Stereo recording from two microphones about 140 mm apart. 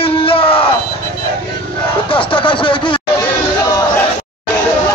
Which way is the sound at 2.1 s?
40° left (ahead or behind).